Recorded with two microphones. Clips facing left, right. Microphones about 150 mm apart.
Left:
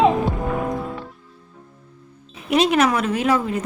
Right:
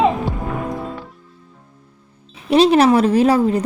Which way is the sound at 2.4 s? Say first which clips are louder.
Right 5 dB; 30° right (ahead or behind).